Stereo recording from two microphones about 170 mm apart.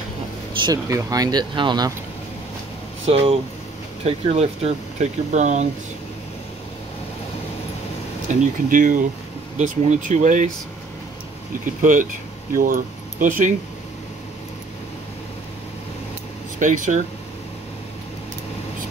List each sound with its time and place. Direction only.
0.6 s speech: 20° right (ahead or behind)
3.1 s speech: 35° right (ahead or behind)
8.3 s speech: 45° right (ahead or behind)
11.8 s speech: 50° right (ahead or behind)
16.5 s speech: 50° right (ahead or behind)